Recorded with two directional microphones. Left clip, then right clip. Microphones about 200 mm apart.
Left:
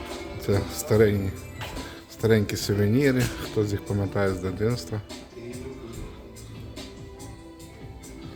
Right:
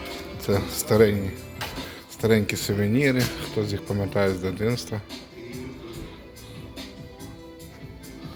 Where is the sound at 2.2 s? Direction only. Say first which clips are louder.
Right 1 dB; 15° left (ahead or behind).